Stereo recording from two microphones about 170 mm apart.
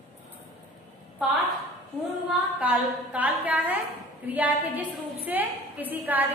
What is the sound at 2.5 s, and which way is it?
A woman's voice, 10° right (ahead or behind).